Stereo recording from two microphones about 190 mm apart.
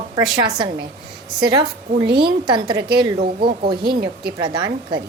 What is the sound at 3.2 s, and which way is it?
A woman's voice, 50° right (ahead or behind).